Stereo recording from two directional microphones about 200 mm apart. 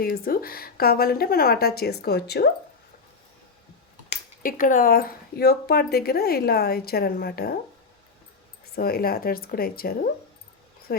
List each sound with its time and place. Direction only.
0.0 s speech: 50° left (ahead or behind)
4.1 s speech: 40° left (ahead or behind)
8.7 s speech: 50° left (ahead or behind)